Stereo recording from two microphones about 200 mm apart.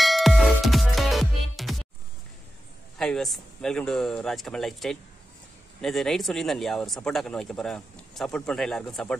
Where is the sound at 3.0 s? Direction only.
5° left (ahead or behind).